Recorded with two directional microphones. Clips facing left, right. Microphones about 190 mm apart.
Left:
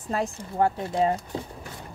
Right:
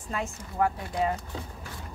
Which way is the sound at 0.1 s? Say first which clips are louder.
Left 6 dB; 35° left (ahead or behind).